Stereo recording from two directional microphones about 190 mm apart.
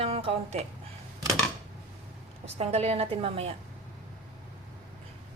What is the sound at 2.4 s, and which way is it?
Speech, 35° right (ahead or behind).